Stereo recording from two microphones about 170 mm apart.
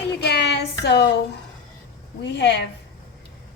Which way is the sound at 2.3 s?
90° left.